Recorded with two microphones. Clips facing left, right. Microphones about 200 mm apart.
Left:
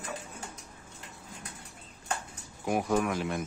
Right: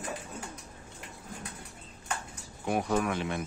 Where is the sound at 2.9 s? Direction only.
5° left (ahead or behind).